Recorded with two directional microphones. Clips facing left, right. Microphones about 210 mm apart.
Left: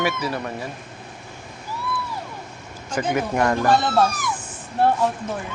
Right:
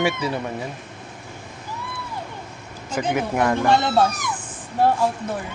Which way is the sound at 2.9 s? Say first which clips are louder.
Even; 10° right (ahead or behind).